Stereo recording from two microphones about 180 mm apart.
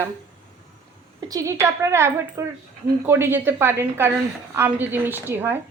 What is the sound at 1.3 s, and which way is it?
A woman's voice, 20° right (ahead or behind).